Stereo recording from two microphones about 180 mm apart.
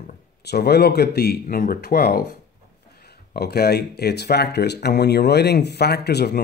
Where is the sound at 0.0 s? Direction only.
65° left (ahead or behind).